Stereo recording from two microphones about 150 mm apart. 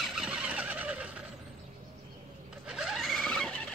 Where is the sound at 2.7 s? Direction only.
5° right (ahead or behind).